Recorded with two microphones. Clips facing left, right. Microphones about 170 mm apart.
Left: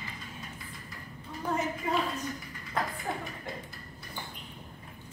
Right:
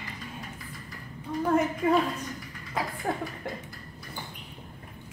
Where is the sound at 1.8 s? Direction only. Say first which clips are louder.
Right 8 dB; 65° right (ahead or behind).